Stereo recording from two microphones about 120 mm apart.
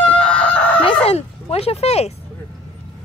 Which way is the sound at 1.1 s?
55° left (ahead or behind).